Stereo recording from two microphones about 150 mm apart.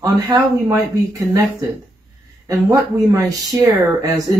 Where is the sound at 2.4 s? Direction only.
20° right (ahead or behind).